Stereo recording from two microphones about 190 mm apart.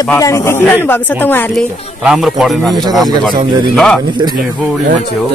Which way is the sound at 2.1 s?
Centre (ahead or behind).